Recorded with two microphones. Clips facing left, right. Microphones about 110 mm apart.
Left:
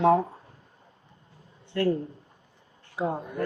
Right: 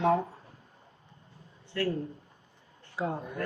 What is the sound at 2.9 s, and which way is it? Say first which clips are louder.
Speech: left 4 dB; 15° left (ahead or behind).